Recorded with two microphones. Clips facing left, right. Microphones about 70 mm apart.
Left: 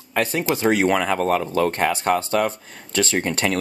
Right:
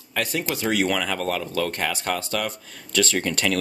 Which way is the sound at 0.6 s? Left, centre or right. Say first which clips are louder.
Left 5 dB; left.